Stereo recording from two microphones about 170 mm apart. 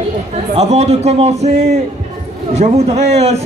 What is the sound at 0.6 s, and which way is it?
A man's voice, 40° right (ahead or behind).